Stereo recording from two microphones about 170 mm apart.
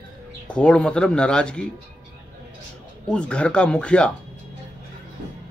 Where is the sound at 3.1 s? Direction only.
5° left (ahead or behind).